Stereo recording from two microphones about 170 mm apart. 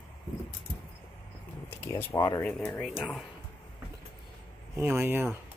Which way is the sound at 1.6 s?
15° left (ahead or behind).